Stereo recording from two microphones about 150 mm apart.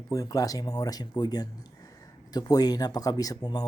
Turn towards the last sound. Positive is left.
turn(degrees=25)  # may be behind; listen again after turning